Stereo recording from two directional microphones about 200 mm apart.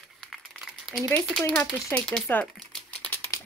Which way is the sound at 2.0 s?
5° left (ahead or behind).